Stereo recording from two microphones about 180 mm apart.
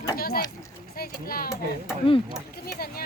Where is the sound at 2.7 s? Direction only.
55° left (ahead or behind).